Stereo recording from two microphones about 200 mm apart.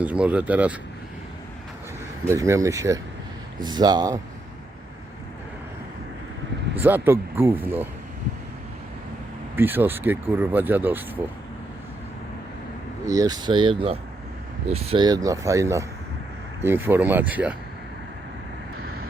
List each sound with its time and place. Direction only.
0.0 s speech: 5° right (ahead or behind)
2.3 s speech: 15° right (ahead or behind)
6.8 s speech: 10° right (ahead or behind)
9.6 s speech: 10° right (ahead or behind)
13.1 s speech: 15° right (ahead or behind)